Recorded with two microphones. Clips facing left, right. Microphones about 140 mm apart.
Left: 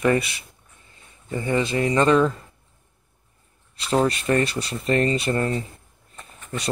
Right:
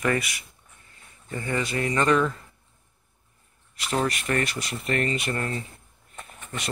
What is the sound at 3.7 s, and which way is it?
Speech, 30° left (ahead or behind).